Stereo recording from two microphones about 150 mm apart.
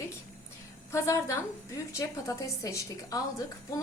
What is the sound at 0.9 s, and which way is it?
A woman's voice, 20° left (ahead or behind).